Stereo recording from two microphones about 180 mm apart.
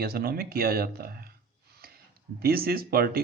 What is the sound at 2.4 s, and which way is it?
Speech, 60° right (ahead or behind).